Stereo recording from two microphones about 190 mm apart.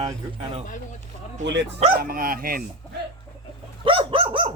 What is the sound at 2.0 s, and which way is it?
Speech, 50° right (ahead or behind).